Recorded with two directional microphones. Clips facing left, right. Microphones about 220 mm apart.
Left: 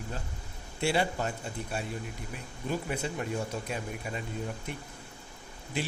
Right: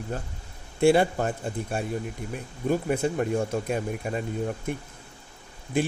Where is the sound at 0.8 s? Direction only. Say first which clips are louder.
Right 9 dB; 50° right (ahead or behind).